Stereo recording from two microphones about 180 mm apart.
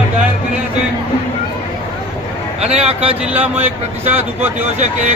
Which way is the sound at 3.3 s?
10° right (ahead or behind).